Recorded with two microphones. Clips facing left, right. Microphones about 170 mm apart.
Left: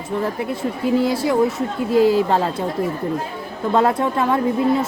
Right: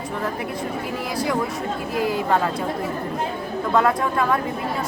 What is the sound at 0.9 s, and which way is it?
Speech, 25° left (ahead or behind).